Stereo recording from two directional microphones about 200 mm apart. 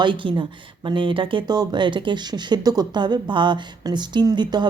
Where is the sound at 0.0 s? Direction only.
25° right (ahead or behind).